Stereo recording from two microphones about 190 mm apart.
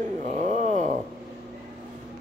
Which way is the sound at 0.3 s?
40° right (ahead or behind).